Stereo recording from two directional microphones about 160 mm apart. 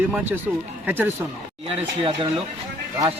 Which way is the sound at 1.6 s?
35° right (ahead or behind).